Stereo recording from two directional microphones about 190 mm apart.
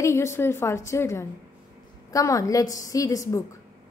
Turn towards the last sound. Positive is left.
turn(degrees=15)  # may be behind; listen again after turning